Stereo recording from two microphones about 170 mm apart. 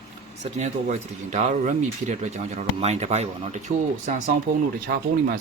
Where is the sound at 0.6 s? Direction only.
45° right (ahead or behind).